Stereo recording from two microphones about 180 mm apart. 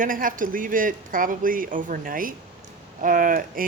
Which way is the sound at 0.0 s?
50° right (ahead or behind).